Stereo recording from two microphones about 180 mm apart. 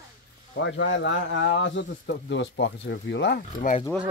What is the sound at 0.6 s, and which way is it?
Speech, 90° left.